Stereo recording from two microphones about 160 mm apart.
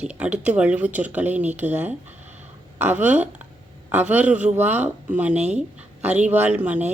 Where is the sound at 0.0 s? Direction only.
10° right (ahead or behind).